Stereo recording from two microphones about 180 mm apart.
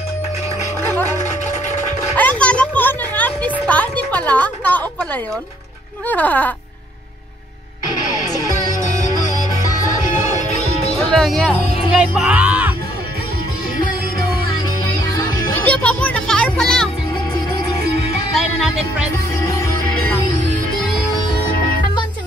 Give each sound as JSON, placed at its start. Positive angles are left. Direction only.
{"t": 1.2, "sound": "a sound", "side_deg": 40}
{"t": 2.1, "sound": "music", "side_deg": 10}
{"t": 6.0, "sound": "speech", "side_deg": 10}
{"t": 11.1, "sound": "speech", "side_deg": 5}
{"t": 15.1, "sound": "music", "side_deg": 10}
{"t": 17.8, "sound": "music", "side_deg": -60}